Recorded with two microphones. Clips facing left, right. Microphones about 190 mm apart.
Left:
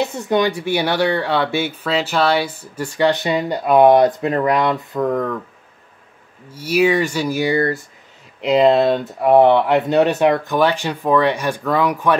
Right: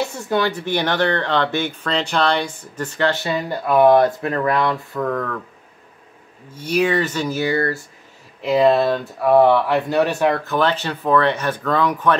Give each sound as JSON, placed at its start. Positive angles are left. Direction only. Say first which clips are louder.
{"t": 0.0, "sound": "speech", "louder": "left 3 dB", "side_deg": 20}
{"t": 6.5, "sound": "speech", "louder": "left 3 dB", "side_deg": 10}